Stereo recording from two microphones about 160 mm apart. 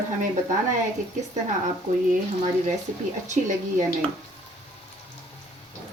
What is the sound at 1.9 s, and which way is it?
Speech, 55° right (ahead or behind).